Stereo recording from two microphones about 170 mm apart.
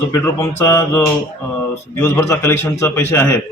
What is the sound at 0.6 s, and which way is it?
A man's voice, 15° left (ahead or behind).